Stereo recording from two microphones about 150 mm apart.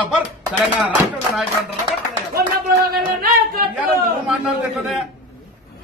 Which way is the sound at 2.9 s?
85° right.